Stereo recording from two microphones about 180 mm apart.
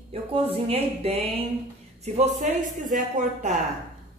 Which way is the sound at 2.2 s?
40° right (ahead or behind).